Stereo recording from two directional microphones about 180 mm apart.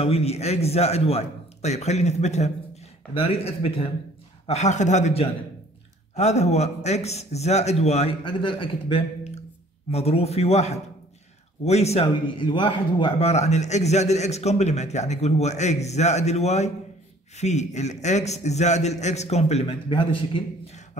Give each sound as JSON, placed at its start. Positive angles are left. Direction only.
{"t": 0.0, "sound": "speech", "side_deg": 35}